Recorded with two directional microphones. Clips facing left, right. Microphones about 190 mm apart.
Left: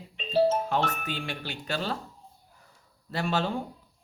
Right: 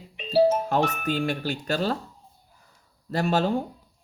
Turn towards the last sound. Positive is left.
turn(degrees=-40)  # may be behind; listen again after turning